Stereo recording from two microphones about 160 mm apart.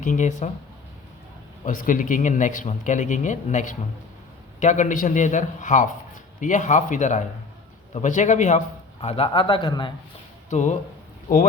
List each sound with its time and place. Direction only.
0.0 s speech: 50° left (ahead or behind)
1.6 s a man's voice: 55° left (ahead or behind); by 9.9 s 30° left (ahead or behind)
10.5 s speech: 50° left (ahead or behind)